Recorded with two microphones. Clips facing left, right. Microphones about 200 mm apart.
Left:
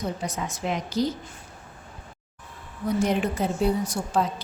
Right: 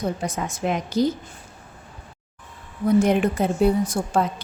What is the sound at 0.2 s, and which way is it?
Speech, 50° right (ahead or behind).